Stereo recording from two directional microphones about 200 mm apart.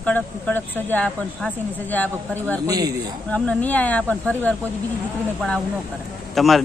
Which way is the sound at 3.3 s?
10° left (ahead or behind).